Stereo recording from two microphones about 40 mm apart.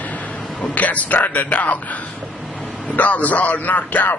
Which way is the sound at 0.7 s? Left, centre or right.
Left.